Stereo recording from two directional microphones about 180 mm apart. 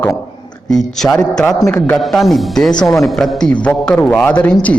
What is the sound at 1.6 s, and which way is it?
Speech, 15° left (ahead or behind).